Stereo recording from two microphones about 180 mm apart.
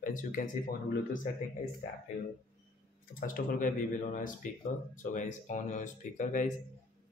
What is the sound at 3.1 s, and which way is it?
Speech, 50° left (ahead or behind).